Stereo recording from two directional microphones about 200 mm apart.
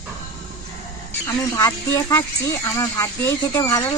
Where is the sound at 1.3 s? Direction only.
15° left (ahead or behind).